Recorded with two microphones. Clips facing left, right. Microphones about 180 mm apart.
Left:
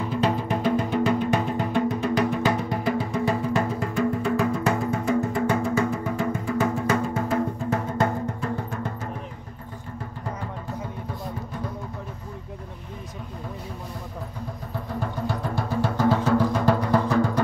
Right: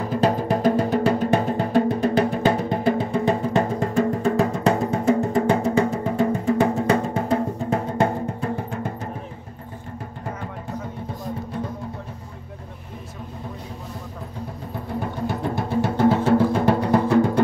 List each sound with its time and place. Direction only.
0.1 s music: 40° right (ahead or behind)
3.8 s music: 40° right (ahead or behind)
15.0 s music: 20° right (ahead or behind)